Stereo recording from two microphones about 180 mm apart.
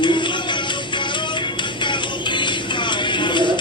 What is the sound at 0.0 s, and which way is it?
Music, 25° left (ahead or behind).